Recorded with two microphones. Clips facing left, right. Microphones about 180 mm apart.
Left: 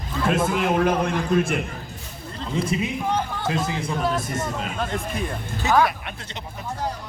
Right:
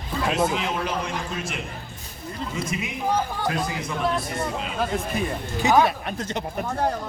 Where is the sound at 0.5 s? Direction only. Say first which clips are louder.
Left 6 dB; 50° left (ahead or behind).